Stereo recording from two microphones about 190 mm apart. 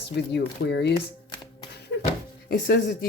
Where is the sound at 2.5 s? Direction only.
50° left (ahead or behind).